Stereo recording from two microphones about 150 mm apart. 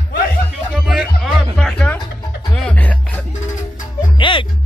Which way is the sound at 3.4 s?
60° left (ahead or behind).